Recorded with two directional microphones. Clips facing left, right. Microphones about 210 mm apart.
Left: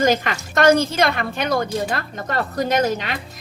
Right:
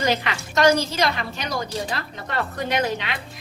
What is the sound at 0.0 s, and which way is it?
Speech, 45° left (ahead or behind).